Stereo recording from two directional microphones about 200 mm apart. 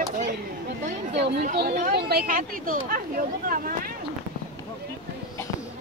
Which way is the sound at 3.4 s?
45° right (ahead or behind).